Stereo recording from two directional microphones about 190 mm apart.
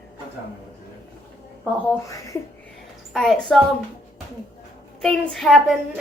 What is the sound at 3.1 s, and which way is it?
Speech, centre (ahead or behind).